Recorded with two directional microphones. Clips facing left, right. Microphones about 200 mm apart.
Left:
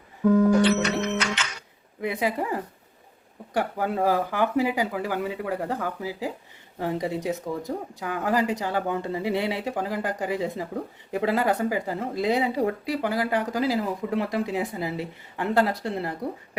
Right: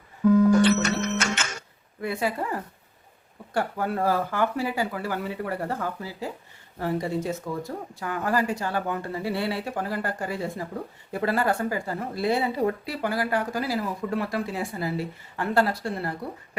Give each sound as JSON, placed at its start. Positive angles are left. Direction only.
{"t": 0.6, "sound": "music", "side_deg": -45}
{"t": 2.0, "sound": "speech", "side_deg": 15}